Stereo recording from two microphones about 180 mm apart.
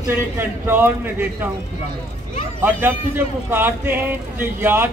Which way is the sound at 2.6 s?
10° right (ahead or behind).